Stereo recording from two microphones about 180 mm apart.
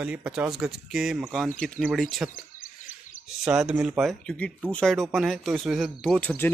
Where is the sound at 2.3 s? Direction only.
50° left (ahead or behind).